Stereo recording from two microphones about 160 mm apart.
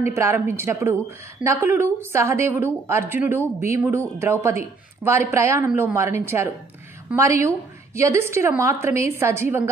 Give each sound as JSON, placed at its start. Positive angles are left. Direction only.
{"t": 0.0, "sound": "a woman's voice", "side_deg": -15}